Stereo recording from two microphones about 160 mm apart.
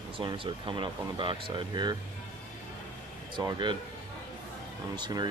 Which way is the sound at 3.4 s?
25° right (ahead or behind).